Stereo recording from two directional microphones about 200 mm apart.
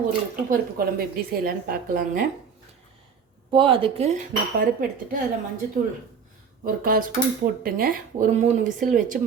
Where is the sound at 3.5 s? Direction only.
25° right (ahead or behind); by 5.2 s 45° right (ahead or behind).